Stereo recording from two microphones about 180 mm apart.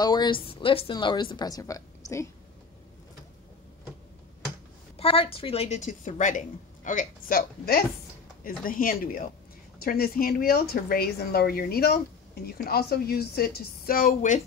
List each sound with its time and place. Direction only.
0.0 s a woman's voice: 25° left (ahead or behind)
4.9 s a woman's voice: 30° left (ahead or behind); by 14.4 s 50° left (ahead or behind)